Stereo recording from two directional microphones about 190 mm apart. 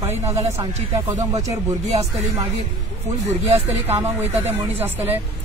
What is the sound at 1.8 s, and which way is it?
Speech, 35° right (ahead or behind).